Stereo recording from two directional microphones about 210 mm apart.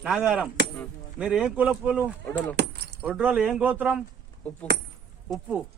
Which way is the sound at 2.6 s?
50° right (ahead or behind).